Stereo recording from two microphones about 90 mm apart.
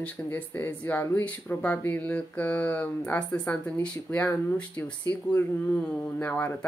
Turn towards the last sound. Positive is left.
turn(degrees=20)  # may be behind; listen again after turning